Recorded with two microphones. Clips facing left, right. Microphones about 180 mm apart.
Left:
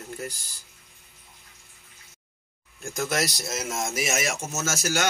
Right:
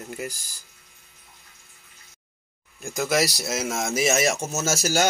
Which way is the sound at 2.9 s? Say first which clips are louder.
Right 4 dB; centre (ahead or behind).